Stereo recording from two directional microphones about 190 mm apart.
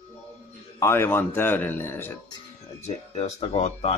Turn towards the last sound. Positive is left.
turn(degrees=35)  # may be behind; listen again after turning